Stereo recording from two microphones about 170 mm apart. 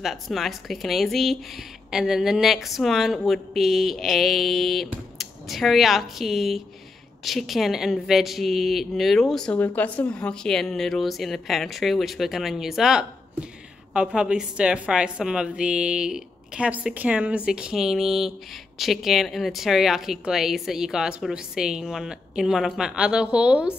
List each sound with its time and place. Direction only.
0.0 s speech: centre (ahead or behind)